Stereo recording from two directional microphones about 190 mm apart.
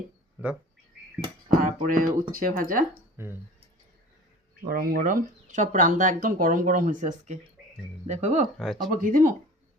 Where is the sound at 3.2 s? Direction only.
10° right (ahead or behind).